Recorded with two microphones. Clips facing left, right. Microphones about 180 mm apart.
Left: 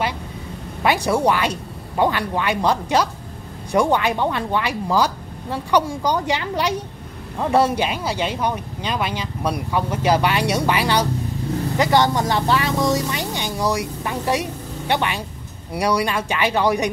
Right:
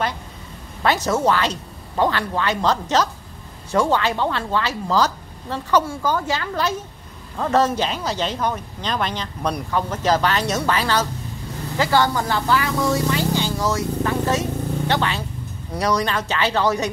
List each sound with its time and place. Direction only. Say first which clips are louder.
0.8 s speech: left 1 dB; 10° left (ahead or behind)